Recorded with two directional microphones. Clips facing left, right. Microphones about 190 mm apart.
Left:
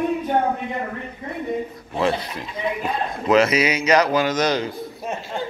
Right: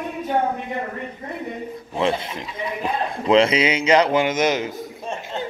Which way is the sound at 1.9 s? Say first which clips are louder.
Even; 25° right (ahead or behind).